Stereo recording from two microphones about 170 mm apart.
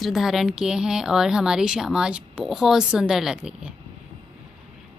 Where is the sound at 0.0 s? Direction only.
Centre (ahead or behind).